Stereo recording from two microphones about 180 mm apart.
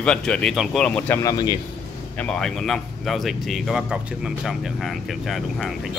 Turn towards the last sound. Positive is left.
turn(degrees=0)  # may be behind; listen again after turning